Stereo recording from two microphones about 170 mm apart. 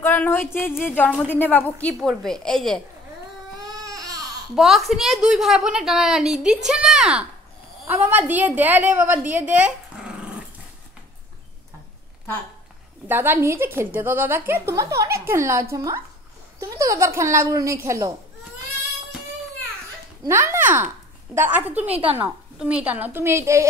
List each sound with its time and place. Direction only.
0.0 s a woman's voice: 10° left (ahead or behind)
3.5 s baby cry: 20° right (ahead or behind)
4.6 s a woman's voice: centre (ahead or behind)
13.1 s a woman's voice: 10° right (ahead or behind)
20.2 s a woman's voice: 15° right (ahead or behind)